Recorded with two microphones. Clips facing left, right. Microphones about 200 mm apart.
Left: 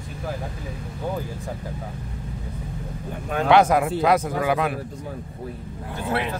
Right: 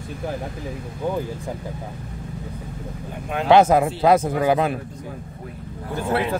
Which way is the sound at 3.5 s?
25° right (ahead or behind).